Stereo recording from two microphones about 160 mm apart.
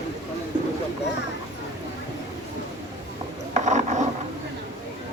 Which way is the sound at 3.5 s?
45° right (ahead or behind).